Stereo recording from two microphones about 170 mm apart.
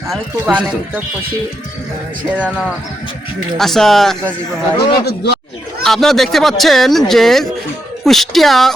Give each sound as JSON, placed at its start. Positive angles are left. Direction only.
{"t": 0.1, "sound": "speech", "side_deg": -5}
{"t": 3.6, "sound": "speech", "side_deg": 0}
{"t": 4.9, "sound": "speech", "side_deg": 80}
{"t": 5.8, "sound": "speech", "side_deg": 0}